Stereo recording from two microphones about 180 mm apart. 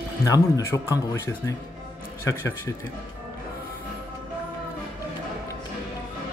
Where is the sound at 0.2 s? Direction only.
15° left (ahead or behind).